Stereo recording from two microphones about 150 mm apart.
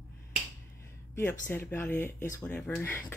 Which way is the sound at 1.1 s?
15° left (ahead or behind).